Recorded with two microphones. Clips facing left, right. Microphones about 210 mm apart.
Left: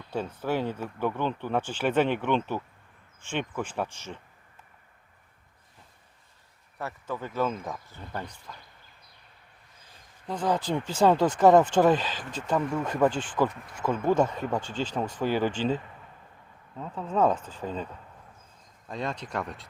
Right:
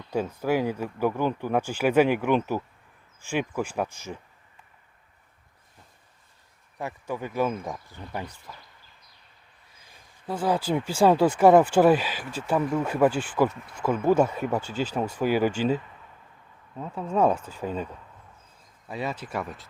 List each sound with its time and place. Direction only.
0.1 s speech: 10° right (ahead or behind)
6.7 s speech: 15° right (ahead or behind)
9.9 s speech: 10° right (ahead or behind)
16.8 s speech: 10° right (ahead or behind)
18.9 s speech: 5° right (ahead or behind)